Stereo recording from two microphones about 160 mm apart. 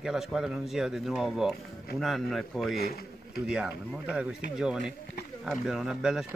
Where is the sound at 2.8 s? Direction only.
75° left (ahead or behind).